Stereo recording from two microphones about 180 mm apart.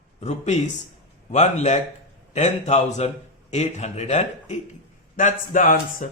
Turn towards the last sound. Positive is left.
turn(degrees=45)  # may be behind; listen again after turning